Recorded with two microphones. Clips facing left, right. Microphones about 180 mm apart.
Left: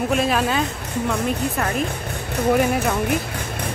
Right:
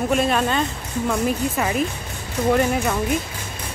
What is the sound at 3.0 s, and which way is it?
Music, 60° left (ahead or behind).